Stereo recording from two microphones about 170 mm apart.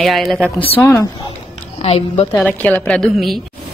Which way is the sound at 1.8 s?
35° left (ahead or behind).